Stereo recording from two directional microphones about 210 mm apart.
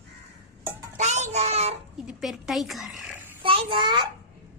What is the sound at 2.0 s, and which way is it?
A woman's voice, centre (ahead or behind).